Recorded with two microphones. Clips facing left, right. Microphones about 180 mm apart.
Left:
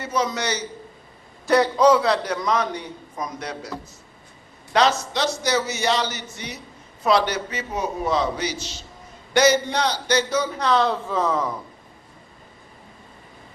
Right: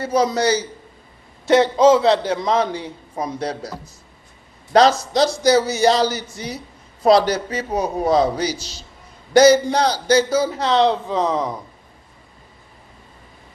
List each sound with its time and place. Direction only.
0.0 s a man's voice: 35° right (ahead or behind)
4.7 s a man's voice: 35° right (ahead or behind); by 11.5 s 20° right (ahead or behind)